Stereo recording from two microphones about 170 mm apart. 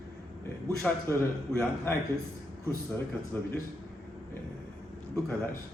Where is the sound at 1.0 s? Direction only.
15° left (ahead or behind).